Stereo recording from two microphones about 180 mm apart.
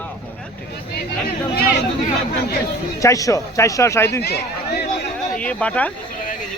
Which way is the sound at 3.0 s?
20° left (ahead or behind).